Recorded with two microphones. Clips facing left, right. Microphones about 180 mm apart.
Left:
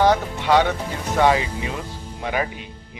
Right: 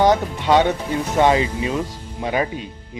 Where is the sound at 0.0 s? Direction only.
20° right (ahead or behind).